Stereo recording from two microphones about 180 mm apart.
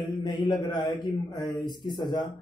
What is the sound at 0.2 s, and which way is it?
A man's voice, 25° left (ahead or behind).